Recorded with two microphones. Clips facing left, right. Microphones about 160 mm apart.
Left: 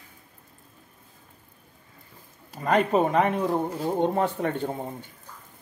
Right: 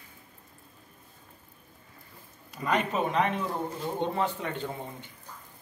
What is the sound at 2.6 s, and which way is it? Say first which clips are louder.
Speech: left 6 dB; 50° left (ahead or behind).